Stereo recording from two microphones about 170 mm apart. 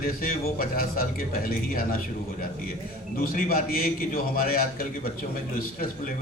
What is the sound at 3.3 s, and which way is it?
A man's voice, 60° left (ahead or behind).